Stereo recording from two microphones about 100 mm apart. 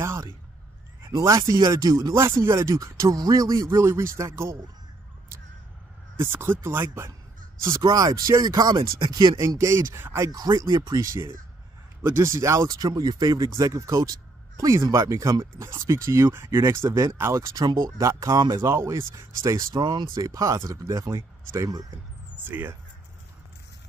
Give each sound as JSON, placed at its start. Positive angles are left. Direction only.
{"t": 0.0, "sound": "a sound", "side_deg": -25}
{"t": 1.0, "sound": "speech", "side_deg": -35}
{"t": 2.1, "sound": "speech", "side_deg": -25}
{"t": 6.1, "sound": "speech", "side_deg": -20}
{"t": 7.8, "sound": "speech", "side_deg": -40}
{"t": 9.4, "sound": "speech", "side_deg": -30}
{"t": 10.3, "sound": "speech", "side_deg": -40}
{"t": 19.8, "sound": "speech", "side_deg": -50}
{"t": 20.1, "sound": "speech", "side_deg": -35}
{"t": 22.4, "sound": "speech", "side_deg": -20}